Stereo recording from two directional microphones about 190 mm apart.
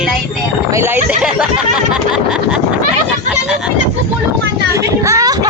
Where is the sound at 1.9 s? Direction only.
5° right (ahead or behind).